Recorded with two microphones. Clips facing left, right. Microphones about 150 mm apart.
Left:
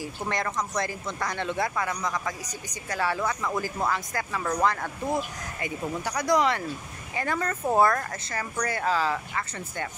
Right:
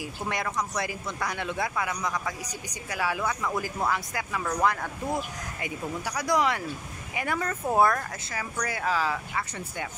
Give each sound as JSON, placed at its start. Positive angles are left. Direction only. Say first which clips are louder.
{"t": 0.0, "sound": "speech", "louder": "left 1 dB", "side_deg": -10}